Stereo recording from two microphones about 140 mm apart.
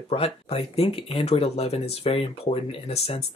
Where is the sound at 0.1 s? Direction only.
45° left (ahead or behind).